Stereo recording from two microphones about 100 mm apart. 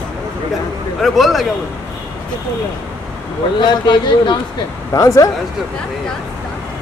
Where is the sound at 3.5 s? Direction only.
45° left (ahead or behind).